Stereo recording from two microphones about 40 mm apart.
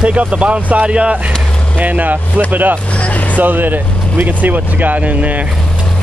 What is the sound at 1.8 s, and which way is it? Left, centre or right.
Speech, right.